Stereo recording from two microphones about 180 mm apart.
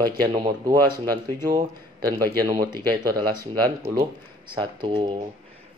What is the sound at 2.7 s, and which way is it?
Speech, 25° right (ahead or behind).